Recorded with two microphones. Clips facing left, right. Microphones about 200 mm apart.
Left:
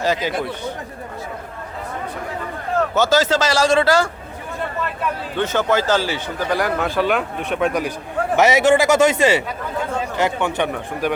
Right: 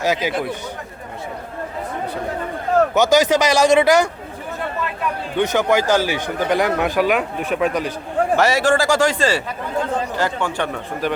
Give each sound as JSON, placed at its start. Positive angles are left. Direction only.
{"t": 0.0, "sound": "speech", "side_deg": -10}
{"t": 2.9, "sound": "speech", "side_deg": -15}
{"t": 5.4, "sound": "speech", "side_deg": -15}
{"t": 7.1, "sound": "speech", "side_deg": -5}
{"t": 7.7, "sound": "a man's voice", "side_deg": 10}